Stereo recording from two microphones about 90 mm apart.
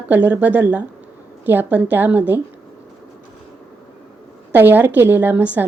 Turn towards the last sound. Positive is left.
turn(degrees=-20)  # may be behind; listen again after turning